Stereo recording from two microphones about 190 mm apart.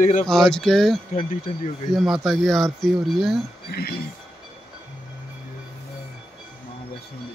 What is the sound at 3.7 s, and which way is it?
Speech, 55° left (ahead or behind).